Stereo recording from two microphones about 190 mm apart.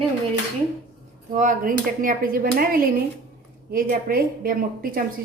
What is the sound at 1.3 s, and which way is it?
A woman's voice, 45° right (ahead or behind).